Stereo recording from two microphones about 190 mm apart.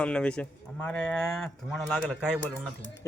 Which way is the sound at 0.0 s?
5° left (ahead or behind).